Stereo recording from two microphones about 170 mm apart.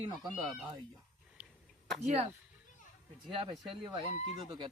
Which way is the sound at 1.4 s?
10° right (ahead or behind).